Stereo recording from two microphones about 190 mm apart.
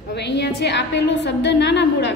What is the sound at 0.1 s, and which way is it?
A woman's voice, 65° left (ahead or behind).